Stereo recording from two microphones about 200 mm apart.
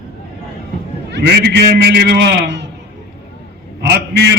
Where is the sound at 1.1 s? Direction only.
60° right (ahead or behind).